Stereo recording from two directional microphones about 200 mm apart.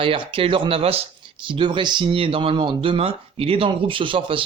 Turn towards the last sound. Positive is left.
turn(degrees=-25)  # may be behind; listen again after turning